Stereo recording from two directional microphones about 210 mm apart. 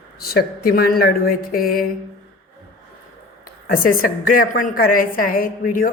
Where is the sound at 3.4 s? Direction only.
45° left (ahead or behind).